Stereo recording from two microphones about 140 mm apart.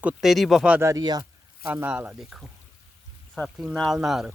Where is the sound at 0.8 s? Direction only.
20° right (ahead or behind).